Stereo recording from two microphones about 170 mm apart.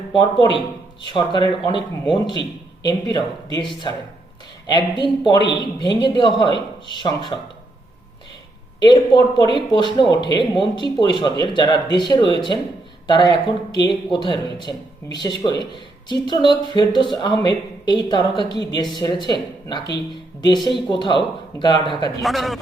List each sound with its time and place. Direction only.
0.1 s speech: 25° left (ahead or behind)
8.8 s speech: 25° left (ahead or behind)
22.2 s speech: centre (ahead or behind)